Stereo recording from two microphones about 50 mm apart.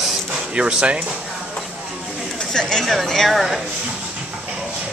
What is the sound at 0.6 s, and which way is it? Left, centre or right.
Speech, centre.